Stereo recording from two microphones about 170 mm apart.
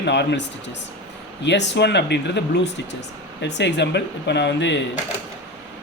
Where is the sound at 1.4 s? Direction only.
90° left.